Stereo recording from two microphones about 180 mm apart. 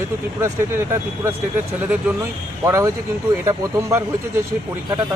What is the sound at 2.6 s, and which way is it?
Speech, 15° right (ahead or behind).